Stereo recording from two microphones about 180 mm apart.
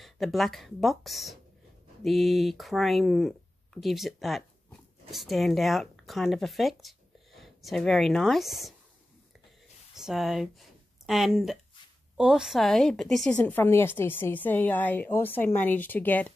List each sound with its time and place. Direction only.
0.0 s speech: centre (ahead or behind)
9.9 s a woman's voice: centre (ahead or behind)